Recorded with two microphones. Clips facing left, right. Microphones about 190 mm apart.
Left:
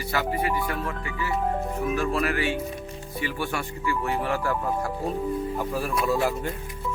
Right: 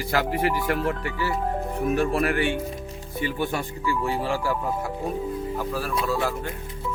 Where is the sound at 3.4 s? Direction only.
20° right (ahead or behind).